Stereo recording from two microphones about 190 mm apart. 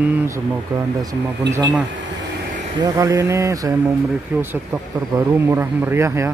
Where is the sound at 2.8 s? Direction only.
15° right (ahead or behind).